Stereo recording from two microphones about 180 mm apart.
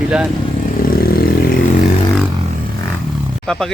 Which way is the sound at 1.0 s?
60° left (ahead or behind).